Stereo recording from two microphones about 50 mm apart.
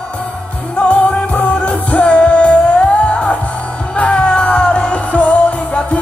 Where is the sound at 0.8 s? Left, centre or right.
Left.